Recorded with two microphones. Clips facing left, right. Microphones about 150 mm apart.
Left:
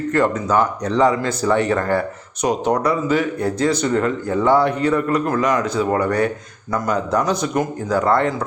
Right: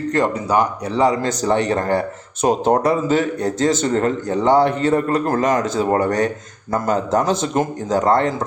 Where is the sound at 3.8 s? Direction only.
40° right (ahead or behind).